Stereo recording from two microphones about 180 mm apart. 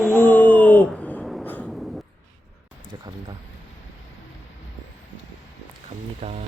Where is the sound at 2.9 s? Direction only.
20° right (ahead or behind).